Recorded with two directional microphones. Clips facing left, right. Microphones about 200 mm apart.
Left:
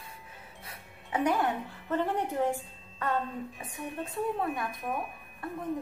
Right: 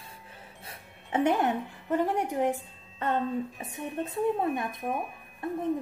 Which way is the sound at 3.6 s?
25° right (ahead or behind).